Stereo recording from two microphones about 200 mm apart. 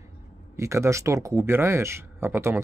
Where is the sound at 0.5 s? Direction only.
15° right (ahead or behind).